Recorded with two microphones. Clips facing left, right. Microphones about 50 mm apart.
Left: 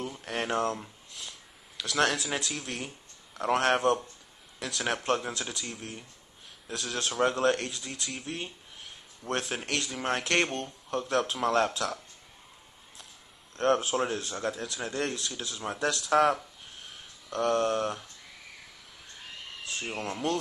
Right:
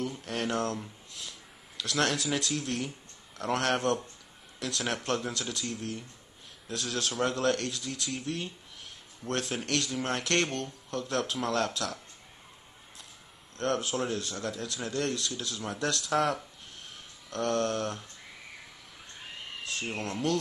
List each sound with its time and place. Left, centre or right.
0.2 s speech: centre
1.8 s speech: centre
4.6 s speech: centre
5.0 s speech: centre
7.0 s speech: centre
9.2 s speech: centre
9.7 s speech: centre
10.4 s speech: left
13.6 s speech: left
14.6 s speech: centre
16.0 s a sound: centre
19.6 s speech: centre